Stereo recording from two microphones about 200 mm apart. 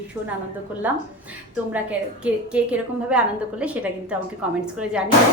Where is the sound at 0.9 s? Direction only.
10° right (ahead or behind).